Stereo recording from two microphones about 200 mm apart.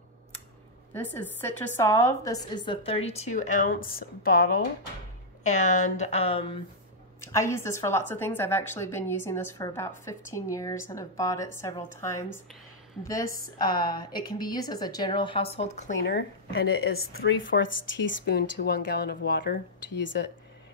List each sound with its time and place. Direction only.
0.9 s a woman's voice: 10° left (ahead or behind); by 4.5 s 50° left (ahead or behind)
5.4 s speech: 35° left (ahead or behind)
7.2 s a woman's voice: 15° left (ahead or behind)
13.6 s a woman's voice: 20° left (ahead or behind)
16.0 s a woman's voice: 55° left (ahead or behind)